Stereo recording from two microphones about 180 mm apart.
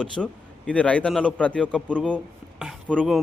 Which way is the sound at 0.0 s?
5° left (ahead or behind).